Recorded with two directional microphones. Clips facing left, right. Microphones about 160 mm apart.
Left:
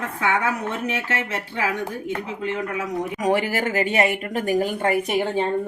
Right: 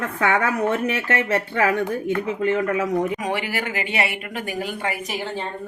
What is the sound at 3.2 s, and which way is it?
Speech, 45° left (ahead or behind).